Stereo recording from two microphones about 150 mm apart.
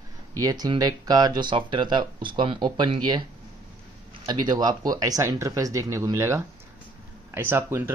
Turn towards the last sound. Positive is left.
turn(degrees=-15)  # may be behind; listen again after turning